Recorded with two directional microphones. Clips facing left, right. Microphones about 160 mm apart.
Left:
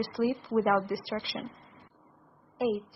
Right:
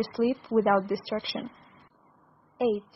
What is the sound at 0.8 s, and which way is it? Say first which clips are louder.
Speech: right 3 dB; 20° right (ahead or behind).